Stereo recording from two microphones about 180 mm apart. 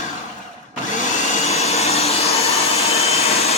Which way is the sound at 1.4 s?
35° left (ahead or behind).